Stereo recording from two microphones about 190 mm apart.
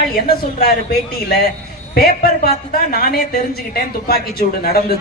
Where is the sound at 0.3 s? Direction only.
55° left (ahead or behind).